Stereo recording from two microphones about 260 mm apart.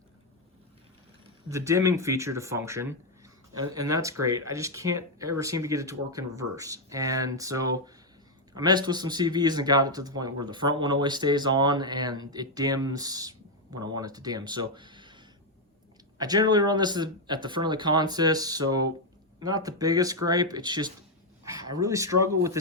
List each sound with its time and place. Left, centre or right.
1.5 s speech: centre